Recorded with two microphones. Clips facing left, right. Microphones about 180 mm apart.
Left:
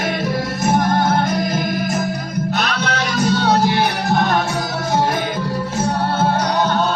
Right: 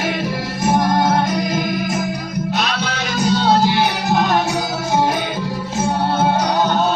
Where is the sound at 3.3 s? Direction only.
30° right (ahead or behind).